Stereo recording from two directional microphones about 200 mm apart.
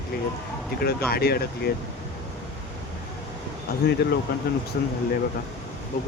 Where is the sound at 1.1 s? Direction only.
50° left (ahead or behind).